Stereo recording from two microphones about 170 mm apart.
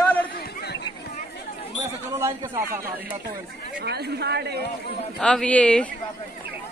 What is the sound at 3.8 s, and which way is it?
Speech, 75° right (ahead or behind).